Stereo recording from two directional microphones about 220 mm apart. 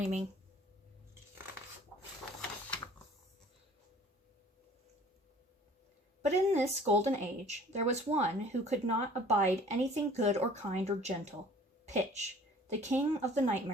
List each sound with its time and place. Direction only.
0.0 s speech: 35° right (ahead or behind)
6.2 s speech: 30° right (ahead or behind)